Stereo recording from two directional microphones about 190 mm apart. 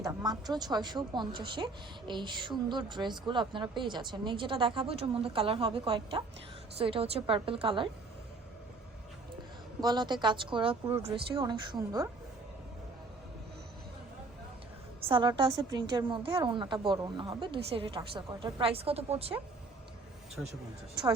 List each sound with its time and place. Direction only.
0.0 s a woman's voice: 20° right (ahead or behind)
9.8 s a woman's voice: 25° right (ahead or behind)
15.0 s a woman's voice: 25° right (ahead or behind)
20.4 s speech: 5° right (ahead or behind)